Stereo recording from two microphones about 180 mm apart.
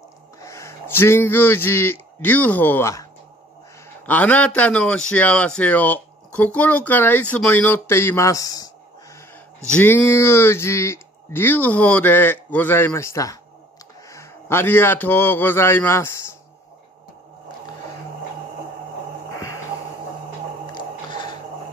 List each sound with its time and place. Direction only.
0.4 s a man's voice: 15° left (ahead or behind)
9.7 s a man's voice: 10° left (ahead or behind)
20.7 s music: 25° left (ahead or behind)